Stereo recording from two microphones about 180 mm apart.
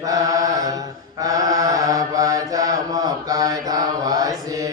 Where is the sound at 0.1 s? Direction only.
20° right (ahead or behind).